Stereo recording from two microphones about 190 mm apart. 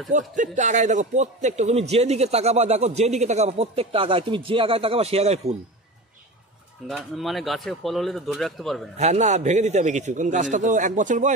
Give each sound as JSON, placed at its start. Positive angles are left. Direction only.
{"t": 0.1, "sound": "a man's voice", "side_deg": -40}
{"t": 6.9, "sound": "speech", "side_deg": 0}
{"t": 8.9, "sound": "a man's voice", "side_deg": -35}